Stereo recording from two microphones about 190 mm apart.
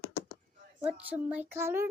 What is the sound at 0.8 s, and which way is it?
Speech, 5° right (ahead or behind).